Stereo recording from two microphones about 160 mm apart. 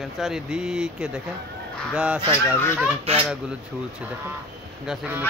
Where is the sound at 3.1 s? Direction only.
40° right (ahead or behind).